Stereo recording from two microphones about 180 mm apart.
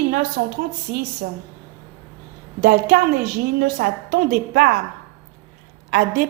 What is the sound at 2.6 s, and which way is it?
A woman's voice, 55° right (ahead or behind).